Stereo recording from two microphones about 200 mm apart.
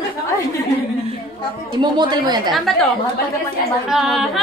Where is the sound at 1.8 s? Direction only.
20° right (ahead or behind).